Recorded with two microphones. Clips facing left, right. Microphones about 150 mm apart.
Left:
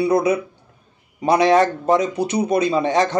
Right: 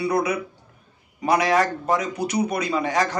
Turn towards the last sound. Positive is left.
turn(degrees=25)  # may be behind; listen again after turning